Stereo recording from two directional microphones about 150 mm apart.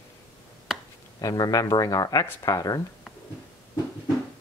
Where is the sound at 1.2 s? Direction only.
25° left (ahead or behind).